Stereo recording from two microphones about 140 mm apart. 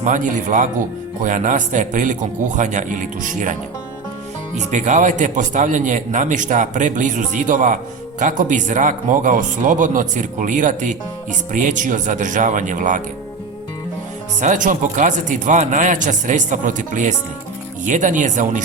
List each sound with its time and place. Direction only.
0.0 s speech: 60° right (ahead or behind)
14.4 s speech: 70° right (ahead or behind)